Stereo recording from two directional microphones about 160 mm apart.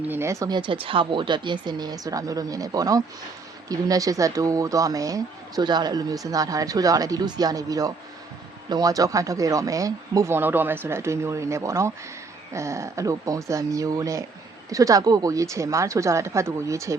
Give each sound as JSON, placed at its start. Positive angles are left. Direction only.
{"t": 0.1, "sound": "speech", "side_deg": -15}